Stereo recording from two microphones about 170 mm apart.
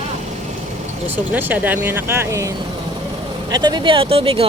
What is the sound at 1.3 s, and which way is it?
Speech, 10° right (ahead or behind).